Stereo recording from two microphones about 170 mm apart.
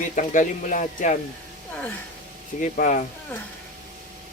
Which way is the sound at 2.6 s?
50° left (ahead or behind).